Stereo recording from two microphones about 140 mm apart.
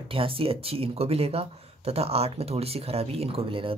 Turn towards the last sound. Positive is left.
turn(degrees=-40)  # may be behind; listen again after turning